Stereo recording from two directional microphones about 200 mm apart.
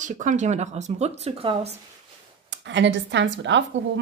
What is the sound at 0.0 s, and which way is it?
Speech, 40° right (ahead or behind).